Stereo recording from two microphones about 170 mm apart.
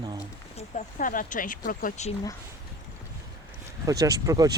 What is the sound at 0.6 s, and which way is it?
Speech, 50° left (ahead or behind).